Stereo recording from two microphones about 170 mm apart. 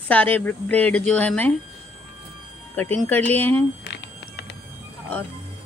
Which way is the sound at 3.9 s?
90° left.